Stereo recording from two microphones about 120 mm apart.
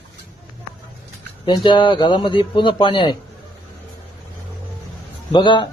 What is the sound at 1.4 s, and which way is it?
A man's voice, 40° left (ahead or behind).